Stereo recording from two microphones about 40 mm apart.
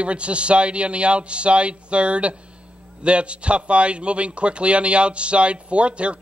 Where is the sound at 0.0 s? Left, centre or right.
Right.